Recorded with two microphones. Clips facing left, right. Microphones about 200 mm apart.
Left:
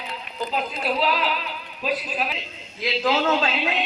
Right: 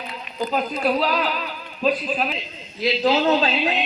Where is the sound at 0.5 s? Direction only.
45° right (ahead or behind).